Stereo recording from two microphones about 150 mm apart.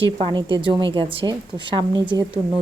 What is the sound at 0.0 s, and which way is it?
A woman's voice, 35° right (ahead or behind).